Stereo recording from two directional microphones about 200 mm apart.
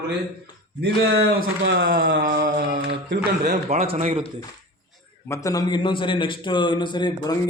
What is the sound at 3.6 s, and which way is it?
Speech, 30° right (ahead or behind).